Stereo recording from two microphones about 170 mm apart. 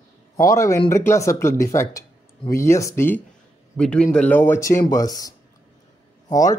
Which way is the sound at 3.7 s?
5° left (ahead or behind).